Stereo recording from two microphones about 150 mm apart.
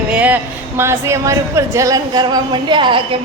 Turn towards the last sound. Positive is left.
turn(degrees=-35)  # may be behind; listen again after turning